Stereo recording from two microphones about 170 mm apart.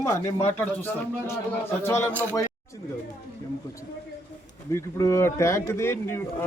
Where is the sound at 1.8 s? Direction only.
10° left (ahead or behind).